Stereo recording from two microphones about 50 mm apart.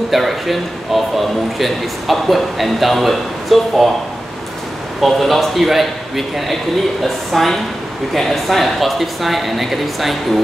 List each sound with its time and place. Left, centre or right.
0.1 s a man's voice: centre
5.0 s a man's voice: centre